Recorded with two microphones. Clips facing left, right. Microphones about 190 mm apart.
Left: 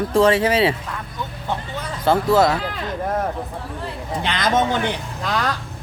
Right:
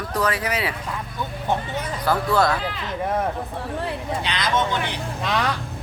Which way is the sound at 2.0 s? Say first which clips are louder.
Left 5 dB; 25° left (ahead or behind).